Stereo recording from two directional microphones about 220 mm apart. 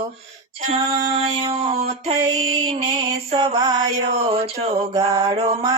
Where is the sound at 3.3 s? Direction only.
20° right (ahead or behind).